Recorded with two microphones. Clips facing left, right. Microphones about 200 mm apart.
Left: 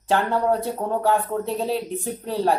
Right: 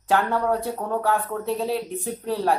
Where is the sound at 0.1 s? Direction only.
25° left (ahead or behind).